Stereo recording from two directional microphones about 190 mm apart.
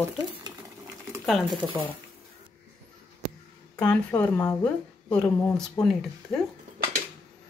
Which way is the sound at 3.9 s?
10° left (ahead or behind).